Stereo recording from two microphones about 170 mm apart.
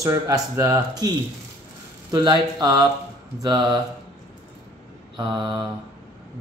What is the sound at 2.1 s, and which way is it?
Speech, 25° right (ahead or behind).